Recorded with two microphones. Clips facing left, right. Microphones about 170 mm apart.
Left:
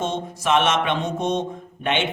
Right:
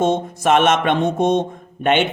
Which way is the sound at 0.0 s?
50° right (ahead or behind).